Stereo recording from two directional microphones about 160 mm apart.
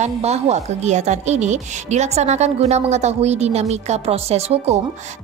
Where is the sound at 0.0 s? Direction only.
45° right (ahead or behind).